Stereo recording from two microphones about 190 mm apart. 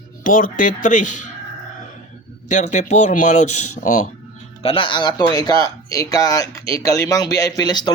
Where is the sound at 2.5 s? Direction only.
40° left (ahead or behind).